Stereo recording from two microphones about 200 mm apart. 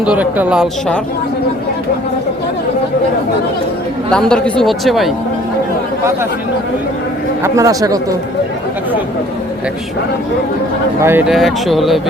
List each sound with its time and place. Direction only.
0.0 s speech: 5° right (ahead or behind)
4.1 s speech: 5° left (ahead or behind)
7.4 s speech: 15° right (ahead or behind)
11.0 s speech: 10° right (ahead or behind)